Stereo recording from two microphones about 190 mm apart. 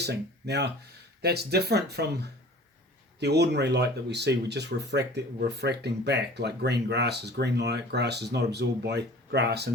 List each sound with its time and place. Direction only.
0.0 s speech: 60° right (ahead or behind)